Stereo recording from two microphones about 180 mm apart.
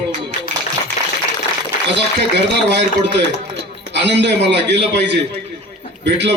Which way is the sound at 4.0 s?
70° right (ahead or behind).